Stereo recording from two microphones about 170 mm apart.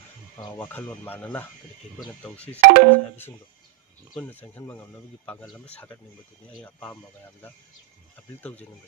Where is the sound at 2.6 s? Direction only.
70° right (ahead or behind).